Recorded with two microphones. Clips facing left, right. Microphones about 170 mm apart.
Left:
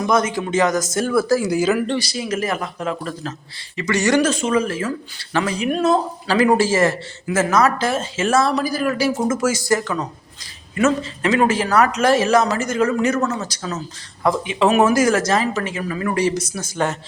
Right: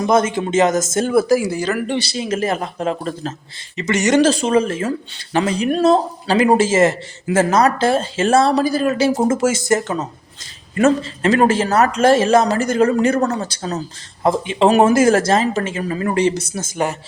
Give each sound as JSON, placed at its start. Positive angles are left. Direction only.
{"t": 0.1, "sound": "speech", "side_deg": -25}
{"t": 1.4, "sound": "speech", "side_deg": 0}
{"t": 2.0, "sound": "speech", "side_deg": -25}
{"t": 4.3, "sound": "speech", "side_deg": -35}
{"t": 14.2, "sound": "speech", "side_deg": -25}
{"t": 16.7, "sound": "speech", "side_deg": -10}